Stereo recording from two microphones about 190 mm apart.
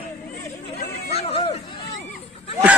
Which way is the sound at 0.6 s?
35° left (ahead or behind).